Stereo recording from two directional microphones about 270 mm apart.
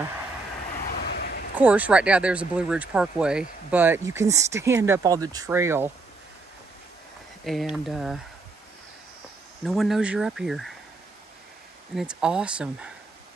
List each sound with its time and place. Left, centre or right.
0.8 s vehicle: left
1.6 s speech: centre
7.4 s speech: centre
9.7 s speech: centre
11.9 s speech: centre